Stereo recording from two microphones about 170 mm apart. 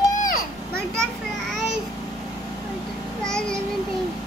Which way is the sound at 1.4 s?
Centre (ahead or behind).